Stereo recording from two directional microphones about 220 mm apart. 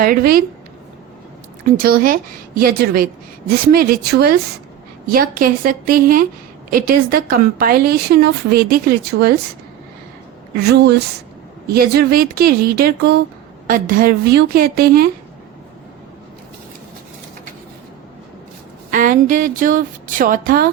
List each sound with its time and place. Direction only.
0.0 s a woman's voice: 40° right (ahead or behind)
1.6 s a woman's voice: 40° right (ahead or behind)
10.6 s a woman's voice: 50° right (ahead or behind)
18.9 s speech: 35° right (ahead or behind)